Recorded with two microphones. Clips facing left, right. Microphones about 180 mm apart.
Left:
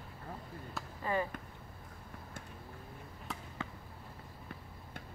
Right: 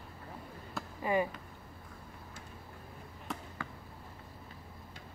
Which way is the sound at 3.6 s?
20° left (ahead or behind).